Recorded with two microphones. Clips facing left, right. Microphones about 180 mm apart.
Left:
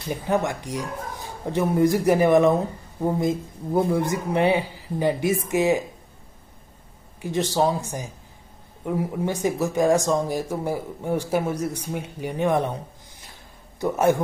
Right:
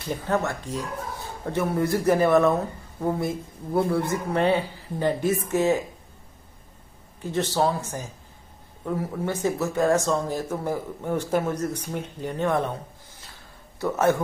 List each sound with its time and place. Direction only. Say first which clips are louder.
0.1 s speech: left 2 dB; 15° left (ahead or behind)
7.2 s speech: left 2 dB; 15° left (ahead or behind)
13.3 s a sound: left 1 dB; 15° left (ahead or behind)